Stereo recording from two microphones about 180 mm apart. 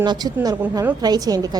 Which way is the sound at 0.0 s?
25° right (ahead or behind).